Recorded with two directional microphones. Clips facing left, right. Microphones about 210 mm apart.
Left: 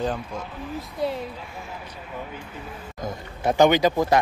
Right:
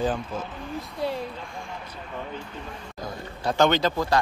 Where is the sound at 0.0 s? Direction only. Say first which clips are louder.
Right 1 dB; 5° right (ahead or behind).